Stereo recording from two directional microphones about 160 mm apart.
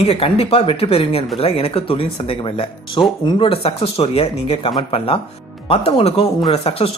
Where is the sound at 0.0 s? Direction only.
35° left (ahead or behind).